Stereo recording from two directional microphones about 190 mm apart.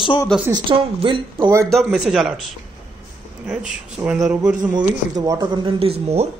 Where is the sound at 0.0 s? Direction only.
25° left (ahead or behind).